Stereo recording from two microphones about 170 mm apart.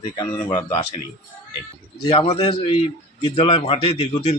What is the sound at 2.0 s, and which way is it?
A man's voice, 35° left (ahead or behind).